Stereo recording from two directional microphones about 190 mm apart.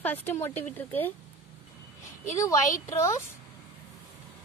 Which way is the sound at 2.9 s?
15° left (ahead or behind).